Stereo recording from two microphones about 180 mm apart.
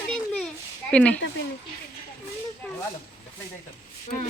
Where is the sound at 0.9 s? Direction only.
5° left (ahead or behind).